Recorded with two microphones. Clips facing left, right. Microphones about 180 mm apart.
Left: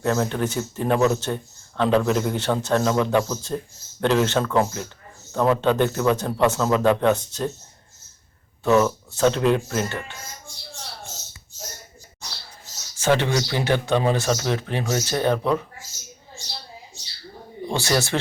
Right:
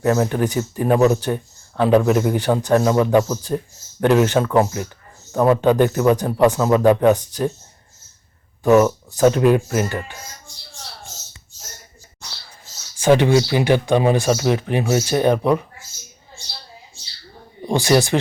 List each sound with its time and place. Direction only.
0.0 s speech: 10° right (ahead or behind)
8.6 s speech: 15° right (ahead or behind)
13.0 s speech: 15° right (ahead or behind)
17.7 s speech: 15° right (ahead or behind)